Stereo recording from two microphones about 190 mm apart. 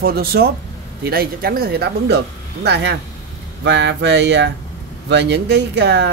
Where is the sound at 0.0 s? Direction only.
55° right (ahead or behind).